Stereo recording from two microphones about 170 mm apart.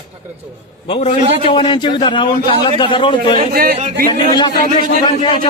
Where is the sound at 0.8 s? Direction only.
35° left (ahead or behind).